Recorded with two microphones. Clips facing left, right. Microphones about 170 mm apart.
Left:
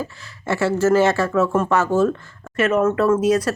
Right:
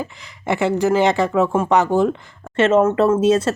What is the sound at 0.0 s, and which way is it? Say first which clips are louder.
Speech: right 1 dB; 15° right (ahead or behind).